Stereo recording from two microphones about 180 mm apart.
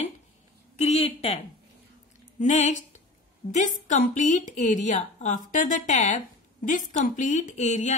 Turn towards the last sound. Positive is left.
turn(degrees=40)  # may be behind; listen again after turning